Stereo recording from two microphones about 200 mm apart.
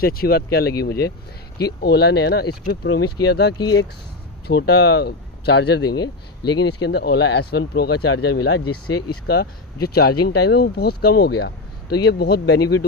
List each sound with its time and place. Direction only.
0.0 s speech: 50° left (ahead or behind)
5.9 s speech: 20° left (ahead or behind)
6.6 s speech: 55° left (ahead or behind); by 9.2 s 75° left (ahead or behind)
9.3 s speech: 55° left (ahead or behind)